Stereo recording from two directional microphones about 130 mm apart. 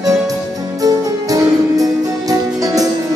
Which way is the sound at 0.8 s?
30° right (ahead or behind).